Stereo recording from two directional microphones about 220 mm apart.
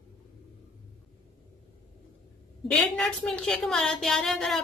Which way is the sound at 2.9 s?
Centre (ahead or behind).